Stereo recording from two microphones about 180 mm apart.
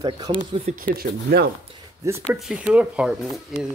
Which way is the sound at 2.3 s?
Centre (ahead or behind).